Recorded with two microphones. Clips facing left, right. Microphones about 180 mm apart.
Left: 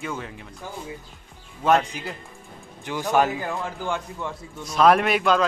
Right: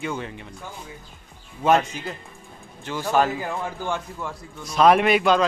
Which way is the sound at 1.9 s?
10° left (ahead or behind).